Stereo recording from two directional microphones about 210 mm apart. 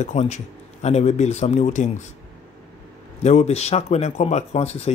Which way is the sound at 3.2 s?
30° left (ahead or behind).